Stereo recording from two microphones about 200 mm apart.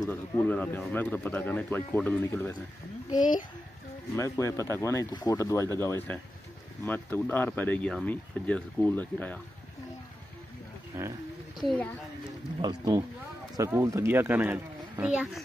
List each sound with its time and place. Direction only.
0.0 s speech: 15° left (ahead or behind)
4.2 s speech: 15° left (ahead or behind)
10.9 s speech: 10° right (ahead or behind)
11.6 s a woman's voice: 5° left (ahead or behind)
12.6 s speech: 20° right (ahead or behind)